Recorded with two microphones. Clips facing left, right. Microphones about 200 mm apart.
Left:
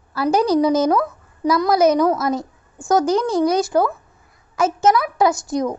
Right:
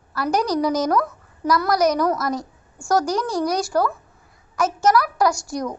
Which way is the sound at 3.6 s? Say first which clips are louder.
Left 3 dB; 20° left (ahead or behind).